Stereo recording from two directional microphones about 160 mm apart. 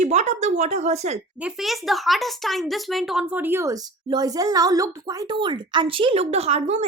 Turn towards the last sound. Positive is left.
turn(degrees=-40)  # may be behind; listen again after turning